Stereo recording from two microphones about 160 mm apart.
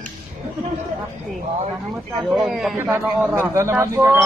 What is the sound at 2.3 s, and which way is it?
Speech, 5° right (ahead or behind).